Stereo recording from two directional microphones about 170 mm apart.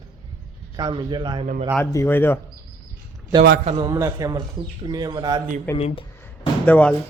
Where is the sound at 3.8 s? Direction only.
20° right (ahead or behind).